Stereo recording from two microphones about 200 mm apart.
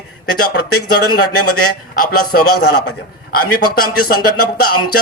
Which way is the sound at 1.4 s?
90° left.